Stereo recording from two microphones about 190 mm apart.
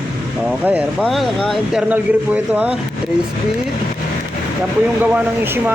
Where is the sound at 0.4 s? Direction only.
10° right (ahead or behind).